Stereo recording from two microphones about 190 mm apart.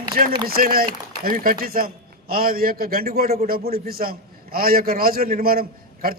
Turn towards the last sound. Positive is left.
turn(degrees=-50)  # may be behind; listen again after turning